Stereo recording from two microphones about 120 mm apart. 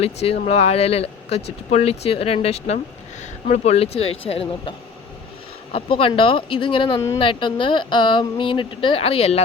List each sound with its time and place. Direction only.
0.0 s speech: 60° left (ahead or behind)
5.7 s speech: 50° left (ahead or behind)